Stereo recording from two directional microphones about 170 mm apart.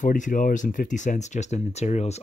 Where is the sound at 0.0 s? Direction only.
50° left (ahead or behind).